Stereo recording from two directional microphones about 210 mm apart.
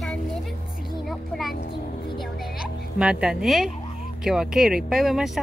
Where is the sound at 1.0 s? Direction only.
Centre (ahead or behind).